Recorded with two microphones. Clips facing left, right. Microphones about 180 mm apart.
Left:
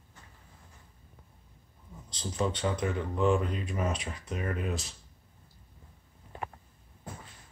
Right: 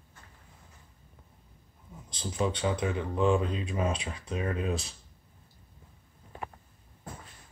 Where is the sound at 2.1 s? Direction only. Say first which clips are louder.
Right 1 dB; 15° right (ahead or behind).